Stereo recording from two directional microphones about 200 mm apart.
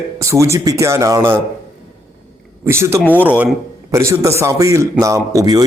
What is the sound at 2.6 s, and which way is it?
A man's voice, 15° right (ahead or behind).